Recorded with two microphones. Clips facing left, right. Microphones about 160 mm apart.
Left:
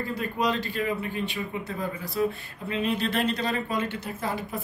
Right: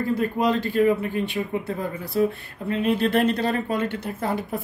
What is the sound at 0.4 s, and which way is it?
Speech, 50° right (ahead or behind).